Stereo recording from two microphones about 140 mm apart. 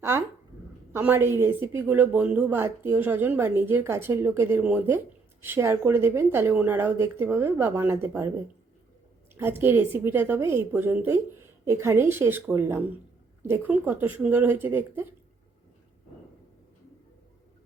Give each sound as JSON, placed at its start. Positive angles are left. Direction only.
{"t": 0.9, "sound": "a woman's voice", "side_deg": -15}
{"t": 9.3, "sound": "a woman's voice", "side_deg": -15}